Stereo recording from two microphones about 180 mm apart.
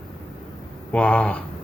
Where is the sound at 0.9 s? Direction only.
5° left (ahead or behind).